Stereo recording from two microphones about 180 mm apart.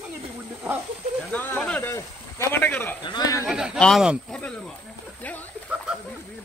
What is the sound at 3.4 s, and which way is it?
Snake, 5° right (ahead or behind).